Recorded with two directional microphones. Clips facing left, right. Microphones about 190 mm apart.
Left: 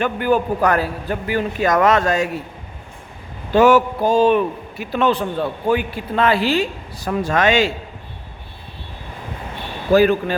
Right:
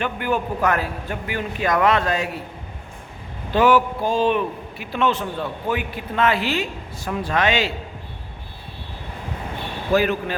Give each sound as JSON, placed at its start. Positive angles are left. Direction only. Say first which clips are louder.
{"t": 0.0, "sound": "a man's voice", "louder": "left 5 dB", "side_deg": 35}
{"t": 3.5, "sound": "a sound", "louder": "left 4 dB", "side_deg": 45}
{"t": 4.8, "sound": "a man's voice", "louder": "left 4 dB", "side_deg": 40}
{"t": 9.9, "sound": "a man's voice", "louder": "left 6 dB", "side_deg": 35}